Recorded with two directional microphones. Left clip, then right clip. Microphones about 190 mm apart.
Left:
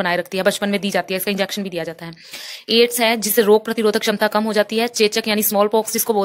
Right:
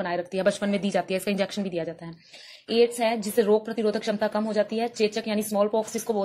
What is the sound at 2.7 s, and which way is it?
A woman's voice, 25° left (ahead or behind).